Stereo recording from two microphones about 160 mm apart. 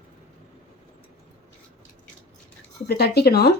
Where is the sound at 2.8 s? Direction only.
85° left.